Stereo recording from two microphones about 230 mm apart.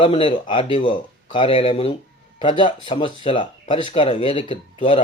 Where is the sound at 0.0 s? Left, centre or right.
Left.